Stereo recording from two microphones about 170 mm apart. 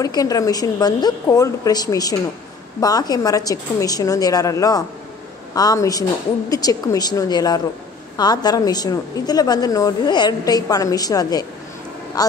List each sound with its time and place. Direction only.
0.0 s a woman's voice: 20° left (ahead or behind)